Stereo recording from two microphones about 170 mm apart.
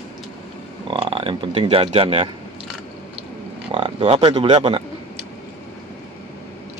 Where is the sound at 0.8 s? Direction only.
30° right (ahead or behind).